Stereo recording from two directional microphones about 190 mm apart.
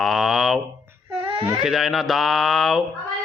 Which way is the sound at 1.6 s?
Centre (ahead or behind).